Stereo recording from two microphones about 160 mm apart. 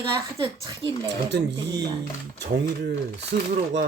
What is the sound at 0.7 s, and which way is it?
Speech, 30° right (ahead or behind).